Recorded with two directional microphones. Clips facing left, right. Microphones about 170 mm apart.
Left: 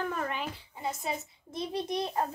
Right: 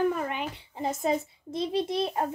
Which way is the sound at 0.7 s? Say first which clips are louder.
Right 9 dB; 45° right (ahead or behind).